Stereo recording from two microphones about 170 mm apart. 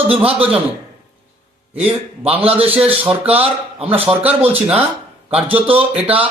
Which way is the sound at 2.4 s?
35° right (ahead or behind).